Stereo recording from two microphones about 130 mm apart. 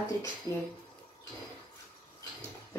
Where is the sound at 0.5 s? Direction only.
25° left (ahead or behind).